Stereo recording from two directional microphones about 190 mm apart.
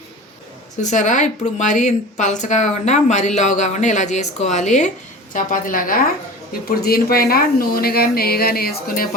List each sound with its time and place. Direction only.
0.8 s a woman's voice: 40° left (ahead or behind)